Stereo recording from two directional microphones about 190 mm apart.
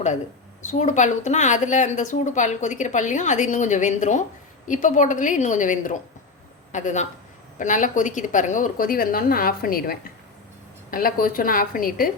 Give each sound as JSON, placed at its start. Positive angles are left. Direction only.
{"t": 0.6, "sound": "a woman's voice", "side_deg": 40}